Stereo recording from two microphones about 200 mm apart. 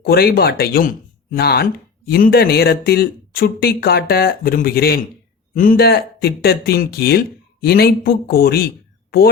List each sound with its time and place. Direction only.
0.0 s speech: 50° left (ahead or behind)